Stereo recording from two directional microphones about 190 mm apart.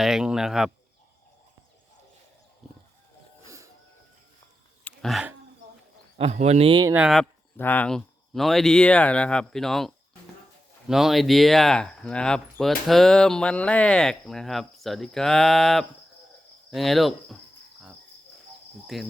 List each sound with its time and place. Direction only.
0.0 s speech: 5° right (ahead or behind)
2.6 s a sound: centre (ahead or behind)
3.4 s train: 15° right (ahead or behind)
4.8 s a sound: 5° left (ahead or behind)
6.1 s speech: 35° right (ahead or behind)
6.9 s speech: centre (ahead or behind)
7.5 s speech: 10° left (ahead or behind)
18.9 s speech: centre (ahead or behind)